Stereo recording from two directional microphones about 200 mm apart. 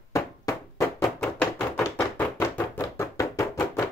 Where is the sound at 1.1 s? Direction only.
5° left (ahead or behind).